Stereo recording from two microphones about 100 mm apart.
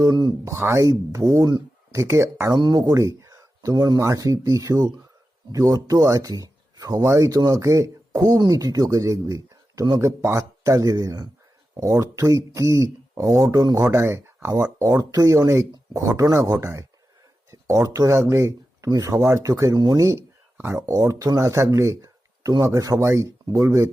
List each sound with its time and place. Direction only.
0.0 s speech: 45° right (ahead or behind)
0.4 s speech: 30° right (ahead or behind)
2.6 s speech: 45° right (ahead or behind)
13.8 s speech: 25° right (ahead or behind)